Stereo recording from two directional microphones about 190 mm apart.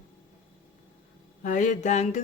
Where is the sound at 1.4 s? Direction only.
40° left (ahead or behind).